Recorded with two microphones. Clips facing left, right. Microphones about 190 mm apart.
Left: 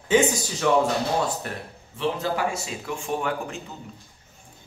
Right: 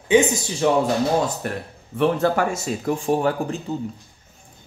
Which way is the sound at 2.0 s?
55° right (ahead or behind).